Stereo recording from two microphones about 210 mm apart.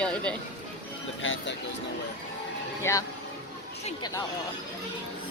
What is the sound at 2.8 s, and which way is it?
Speech, 10° left (ahead or behind).